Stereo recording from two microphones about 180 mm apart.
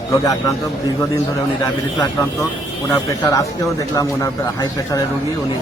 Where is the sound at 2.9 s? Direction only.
20° left (ahead or behind).